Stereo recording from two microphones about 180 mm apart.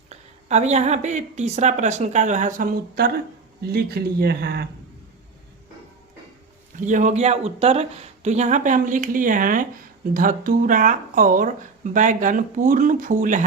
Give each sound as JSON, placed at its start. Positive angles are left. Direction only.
{"t": 0.1, "sound": "a woman's voice", "side_deg": -40}
{"t": 6.7, "sound": "speech", "side_deg": -45}